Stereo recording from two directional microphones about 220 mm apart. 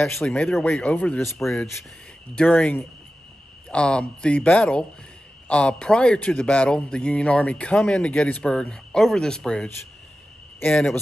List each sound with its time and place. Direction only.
0.0 s a man's voice: 5° left (ahead or behind)